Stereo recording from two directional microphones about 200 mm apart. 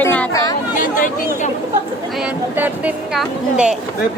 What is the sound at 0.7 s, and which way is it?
Chatter, 40° left (ahead or behind).